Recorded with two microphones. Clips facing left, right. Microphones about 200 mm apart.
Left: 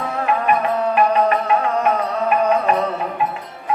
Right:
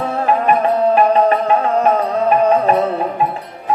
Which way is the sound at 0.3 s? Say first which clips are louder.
Right 4 dB; 35° right (ahead or behind).